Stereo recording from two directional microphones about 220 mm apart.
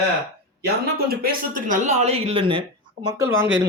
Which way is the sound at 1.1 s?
45° right (ahead or behind).